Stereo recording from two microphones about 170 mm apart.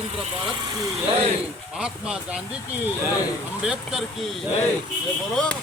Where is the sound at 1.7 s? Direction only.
5° right (ahead or behind).